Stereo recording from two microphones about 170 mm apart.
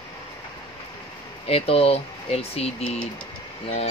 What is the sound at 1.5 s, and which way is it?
Speech, 35° left (ahead or behind).